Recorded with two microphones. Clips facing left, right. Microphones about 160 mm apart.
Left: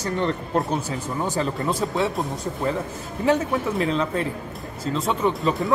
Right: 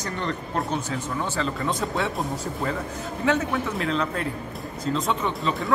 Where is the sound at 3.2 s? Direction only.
30° left (ahead or behind).